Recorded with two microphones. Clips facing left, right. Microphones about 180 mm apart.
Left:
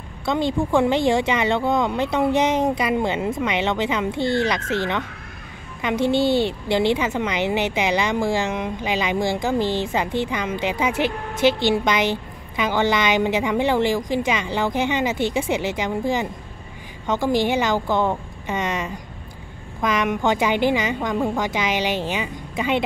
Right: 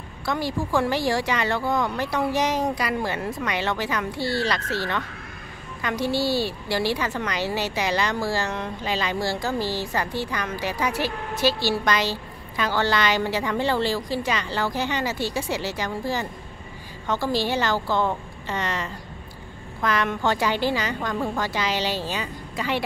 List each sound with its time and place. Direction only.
0.2 s a woman's voice: 20° left (ahead or behind)